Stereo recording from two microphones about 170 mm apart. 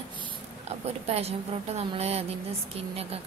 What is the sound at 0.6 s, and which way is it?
A woman's voice, 40° right (ahead or behind).